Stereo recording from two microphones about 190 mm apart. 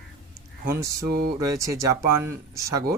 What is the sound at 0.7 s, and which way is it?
Speech, 15° right (ahead or behind).